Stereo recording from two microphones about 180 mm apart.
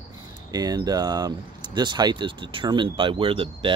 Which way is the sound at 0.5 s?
20° right (ahead or behind).